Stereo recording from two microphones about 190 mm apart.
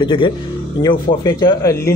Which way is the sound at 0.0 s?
25° left (ahead or behind).